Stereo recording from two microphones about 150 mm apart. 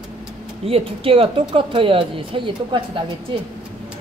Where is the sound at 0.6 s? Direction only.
40° right (ahead or behind).